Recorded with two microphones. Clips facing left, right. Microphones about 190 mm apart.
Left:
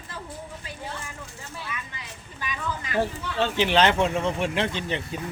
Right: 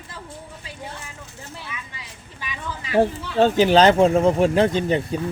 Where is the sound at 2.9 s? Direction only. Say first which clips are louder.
Right 8 dB; 40° right (ahead or behind).